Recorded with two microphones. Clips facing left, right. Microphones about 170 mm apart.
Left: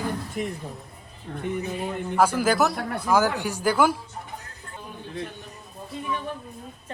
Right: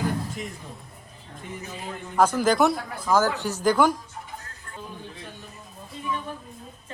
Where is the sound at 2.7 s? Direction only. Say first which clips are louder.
Left 4 dB; 65° left (ahead or behind).